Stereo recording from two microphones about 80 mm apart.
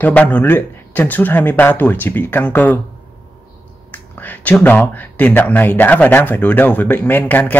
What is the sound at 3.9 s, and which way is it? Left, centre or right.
Speech, left.